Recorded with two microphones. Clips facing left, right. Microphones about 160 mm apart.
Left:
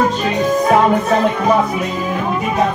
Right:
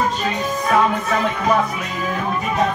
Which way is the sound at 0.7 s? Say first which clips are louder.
Left 3 dB; 35° left (ahead or behind).